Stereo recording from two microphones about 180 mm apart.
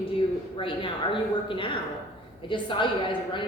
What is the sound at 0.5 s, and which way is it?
A man's voice, 30° left (ahead or behind).